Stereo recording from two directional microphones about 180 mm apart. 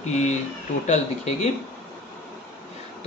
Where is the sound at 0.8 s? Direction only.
40° left (ahead or behind).